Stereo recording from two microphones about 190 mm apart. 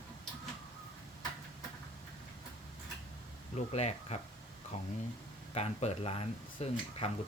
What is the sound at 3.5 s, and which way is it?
Speech, 35° left (ahead or behind).